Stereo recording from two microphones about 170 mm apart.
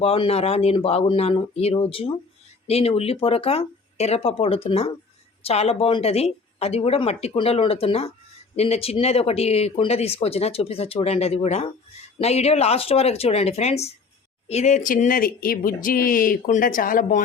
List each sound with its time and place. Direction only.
0.0 s speech: 35° left (ahead or behind); by 17.2 s 50° left (ahead or behind)